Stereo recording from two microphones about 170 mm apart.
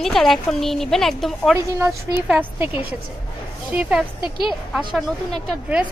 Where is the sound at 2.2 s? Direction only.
10° right (ahead or behind).